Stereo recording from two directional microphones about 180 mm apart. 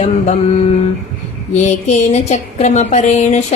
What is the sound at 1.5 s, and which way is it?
Speech, 40° left (ahead or behind).